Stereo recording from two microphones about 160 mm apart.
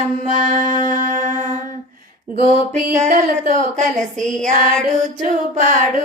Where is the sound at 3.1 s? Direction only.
60° right (ahead or behind).